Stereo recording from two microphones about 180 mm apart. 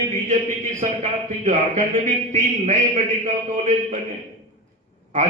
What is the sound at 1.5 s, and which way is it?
A man's voice, 40° right (ahead or behind).